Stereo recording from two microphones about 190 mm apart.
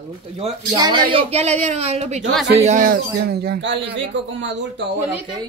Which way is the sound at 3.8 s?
75° right (ahead or behind).